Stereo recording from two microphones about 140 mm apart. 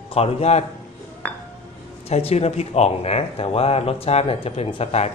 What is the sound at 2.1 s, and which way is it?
Speech, 50° left (ahead or behind).